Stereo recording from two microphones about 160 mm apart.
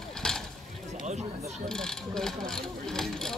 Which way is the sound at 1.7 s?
5° left (ahead or behind).